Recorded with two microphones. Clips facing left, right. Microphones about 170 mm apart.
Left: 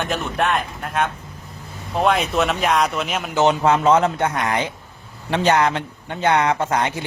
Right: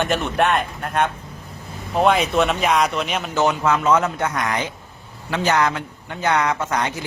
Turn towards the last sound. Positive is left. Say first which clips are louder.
# left 2 dB
turn(degrees=25)  # may be behind; listen again after turning